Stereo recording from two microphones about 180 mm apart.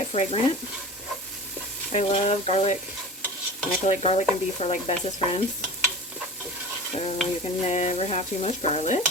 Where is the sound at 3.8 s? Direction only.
35° left (ahead or behind).